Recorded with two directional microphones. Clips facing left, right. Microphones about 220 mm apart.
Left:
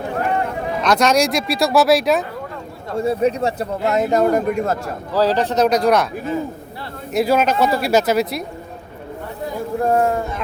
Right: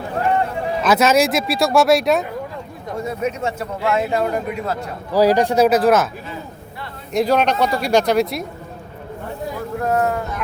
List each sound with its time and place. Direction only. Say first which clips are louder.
0.8 s speech: right 1 dB; 5° right (ahead or behind)
3.0 s speech: left 5 dB; 30° left (ahead or behind)
5.1 s speech: right 3 dB; 10° right (ahead or behind)
7.1 s speech: even; 5° left (ahead or behind)
9.8 s a sound: left 2 dB; 30° left (ahead or behind)